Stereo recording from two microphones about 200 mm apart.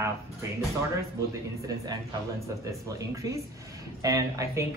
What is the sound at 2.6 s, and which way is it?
Speech, 15° right (ahead or behind).